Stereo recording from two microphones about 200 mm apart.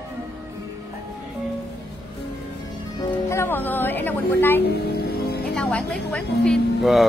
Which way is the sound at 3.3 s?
10° left (ahead or behind).